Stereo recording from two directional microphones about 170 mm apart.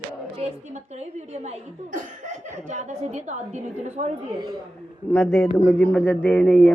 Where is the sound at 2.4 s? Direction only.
45° right (ahead or behind).